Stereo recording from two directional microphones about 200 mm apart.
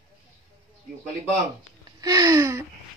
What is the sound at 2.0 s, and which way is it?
Gasp, 15° right (ahead or behind).